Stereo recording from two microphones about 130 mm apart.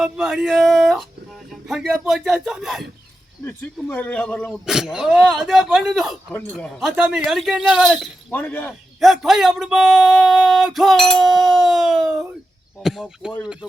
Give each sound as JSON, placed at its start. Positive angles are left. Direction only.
{"t": 0.0, "sound": "speech", "side_deg": -5}
{"t": 3.4, "sound": "a man's voice", "side_deg": 15}
{"t": 4.6, "sound": "speech", "side_deg": -5}
{"t": 6.3, "sound": "a man's voice", "side_deg": 10}
{"t": 6.7, "sound": "speech", "side_deg": 0}
{"t": 8.3, "sound": "a man's voice", "side_deg": 10}
{"t": 9.0, "sound": "speech", "side_deg": 0}